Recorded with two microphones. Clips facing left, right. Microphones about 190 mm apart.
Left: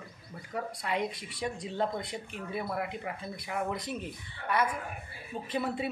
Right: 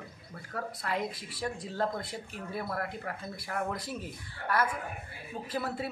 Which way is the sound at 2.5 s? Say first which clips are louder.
Left 1 dB; 10° left (ahead or behind).